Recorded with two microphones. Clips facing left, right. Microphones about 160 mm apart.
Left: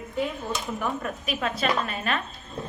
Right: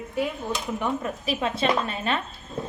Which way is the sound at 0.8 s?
20° right (ahead or behind).